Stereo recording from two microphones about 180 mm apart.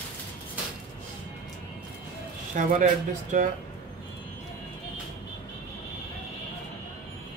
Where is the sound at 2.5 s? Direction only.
45° right (ahead or behind).